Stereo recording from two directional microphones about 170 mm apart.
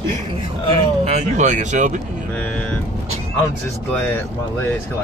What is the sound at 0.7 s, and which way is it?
Speech, 40° right (ahead or behind).